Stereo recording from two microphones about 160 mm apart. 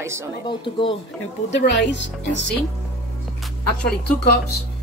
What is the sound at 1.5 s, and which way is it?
Speech, 90° left.